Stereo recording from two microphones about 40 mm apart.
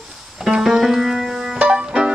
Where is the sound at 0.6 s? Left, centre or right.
Centre.